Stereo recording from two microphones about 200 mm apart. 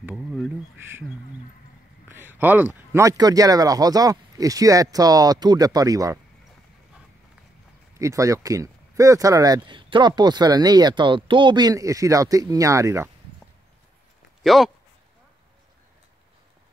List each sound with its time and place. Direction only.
0.0 s a sound: centre (ahead or behind)
2.0 s speech: 10° right (ahead or behind)
8.0 s speech: 15° right (ahead or behind)
14.4 s speech: centre (ahead or behind)